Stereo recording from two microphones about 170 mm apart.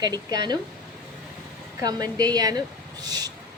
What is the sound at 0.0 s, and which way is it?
Speech, 25° right (ahead or behind).